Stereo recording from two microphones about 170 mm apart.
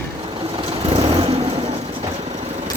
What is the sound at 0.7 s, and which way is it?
Vehicle, 35° right (ahead or behind).